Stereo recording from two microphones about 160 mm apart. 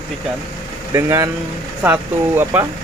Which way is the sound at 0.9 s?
20° right (ahead or behind).